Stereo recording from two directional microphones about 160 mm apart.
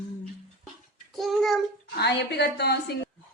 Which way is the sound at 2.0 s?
90° left.